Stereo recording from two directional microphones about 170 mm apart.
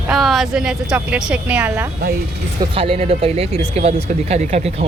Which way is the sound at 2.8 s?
35° right (ahead or behind).